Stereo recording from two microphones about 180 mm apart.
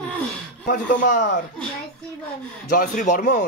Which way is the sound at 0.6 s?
50° left (ahead or behind).